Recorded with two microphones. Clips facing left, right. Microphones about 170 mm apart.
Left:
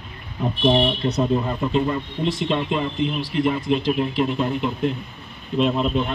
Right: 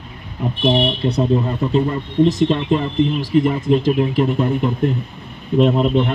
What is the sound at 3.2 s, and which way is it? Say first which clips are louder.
Speech: right 5 dB; 45° right (ahead or behind).